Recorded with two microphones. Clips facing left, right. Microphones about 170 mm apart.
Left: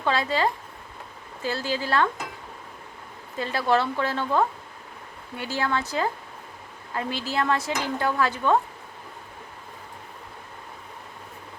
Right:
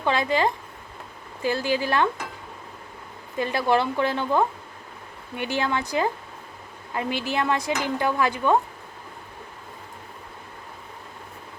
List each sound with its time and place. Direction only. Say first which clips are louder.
0.0 s speech: right 2 dB; 15° right (ahead or behind)
3.3 s speech: right 1 dB; 15° right (ahead or behind)